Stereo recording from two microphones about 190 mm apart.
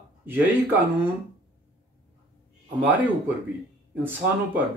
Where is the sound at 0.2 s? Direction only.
10° right (ahead or behind).